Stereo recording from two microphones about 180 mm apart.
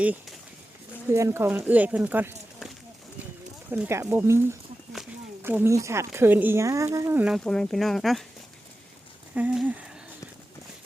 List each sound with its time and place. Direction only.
0.0 s speech: 10° right (ahead or behind)
3.7 s speech: 15° right (ahead or behind)
7.4 s speech: 5° left (ahead or behind)
9.3 s speech: 5° right (ahead or behind)